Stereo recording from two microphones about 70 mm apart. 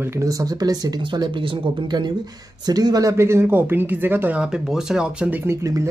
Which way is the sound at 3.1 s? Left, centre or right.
Right.